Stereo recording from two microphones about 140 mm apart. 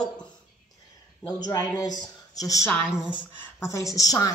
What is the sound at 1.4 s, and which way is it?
A woman's voice, 30° left (ahead or behind).